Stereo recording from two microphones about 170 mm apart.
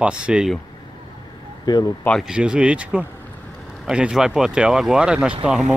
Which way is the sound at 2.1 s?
Centre (ahead or behind).